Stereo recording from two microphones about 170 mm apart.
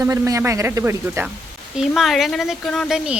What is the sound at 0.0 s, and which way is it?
Speech, 20° right (ahead or behind).